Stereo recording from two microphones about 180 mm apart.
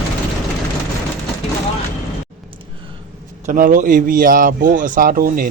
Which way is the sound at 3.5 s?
50° right (ahead or behind).